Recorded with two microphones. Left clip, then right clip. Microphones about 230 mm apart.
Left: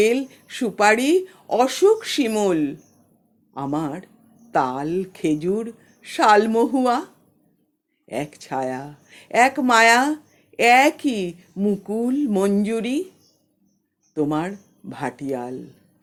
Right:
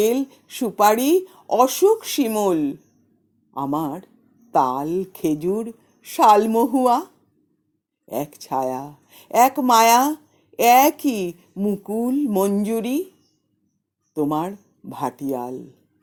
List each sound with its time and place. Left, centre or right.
0.0 s a woman's voice: right
1.6 s speech: centre
2.1 s a woman's voice: right
14.1 s a woman's voice: right